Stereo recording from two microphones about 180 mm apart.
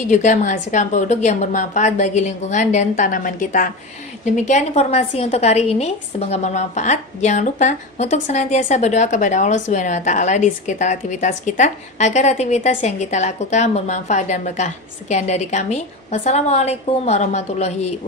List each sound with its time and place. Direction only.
0.1 s a woman's voice: 40° left (ahead or behind)